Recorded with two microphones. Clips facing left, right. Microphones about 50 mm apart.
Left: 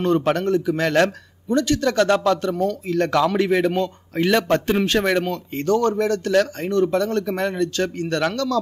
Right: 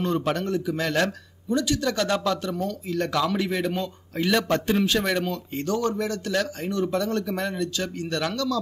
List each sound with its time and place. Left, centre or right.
0.0 s speech: left